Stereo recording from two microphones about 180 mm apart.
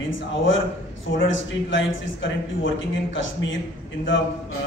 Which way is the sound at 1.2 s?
90° left.